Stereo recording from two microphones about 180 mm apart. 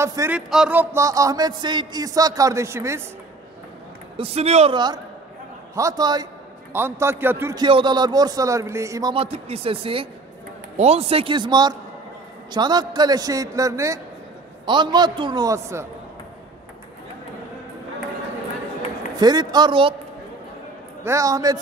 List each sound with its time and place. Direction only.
0.0 s a man's voice: 15° right (ahead or behind)
0.5 s music: 5° right (ahead or behind)
4.2 s speech: 35° right (ahead or behind)
4.7 s music: 25° right (ahead or behind)
6.7 s a man's voice: 15° right (ahead or behind)
7.6 s music: 25° right (ahead or behind)
9.1 s speech: 30° right (ahead or behind)
12.4 s music: 25° right (ahead or behind)
19.1 s music: 20° right (ahead or behind)
21.0 s music: 15° right (ahead or behind)